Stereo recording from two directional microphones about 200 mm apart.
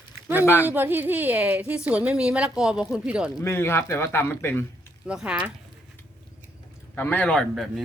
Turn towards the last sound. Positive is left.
turn(degrees=0)  # may be behind; listen again after turning